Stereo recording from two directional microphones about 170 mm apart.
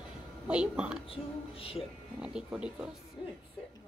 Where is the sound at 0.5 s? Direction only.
5° right (ahead or behind).